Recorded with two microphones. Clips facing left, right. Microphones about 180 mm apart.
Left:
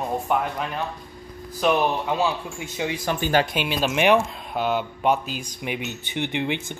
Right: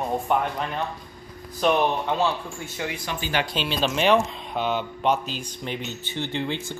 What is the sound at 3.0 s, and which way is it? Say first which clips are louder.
Speech: left 8 dB; 50° left (ahead or behind).